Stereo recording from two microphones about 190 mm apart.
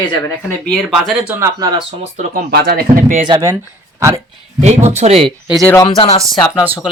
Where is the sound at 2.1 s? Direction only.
50° right (ahead or behind).